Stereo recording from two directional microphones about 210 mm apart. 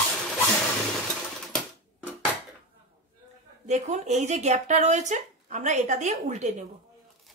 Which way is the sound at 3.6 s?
35° right (ahead or behind).